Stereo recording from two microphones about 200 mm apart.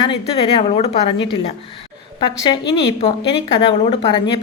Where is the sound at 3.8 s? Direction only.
25° left (ahead or behind).